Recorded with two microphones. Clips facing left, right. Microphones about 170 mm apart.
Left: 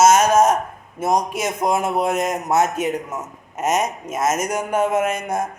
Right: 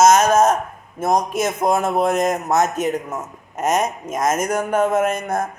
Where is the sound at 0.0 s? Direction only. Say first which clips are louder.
Right 1 dB; 10° left (ahead or behind).